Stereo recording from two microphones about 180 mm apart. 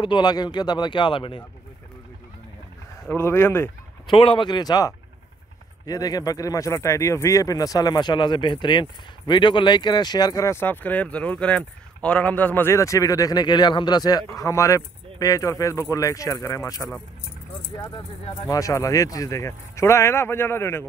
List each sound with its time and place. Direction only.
0.0 s speech: 25° left (ahead or behind)
3.1 s speech: 15° left (ahead or behind)
4.1 s speech: 30° left (ahead or behind)